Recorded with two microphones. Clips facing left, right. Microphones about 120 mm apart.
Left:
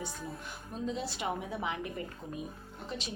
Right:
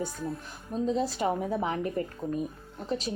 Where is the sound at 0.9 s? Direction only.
40° right (ahead or behind).